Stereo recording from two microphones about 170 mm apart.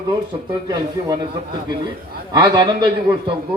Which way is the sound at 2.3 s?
25° right (ahead or behind).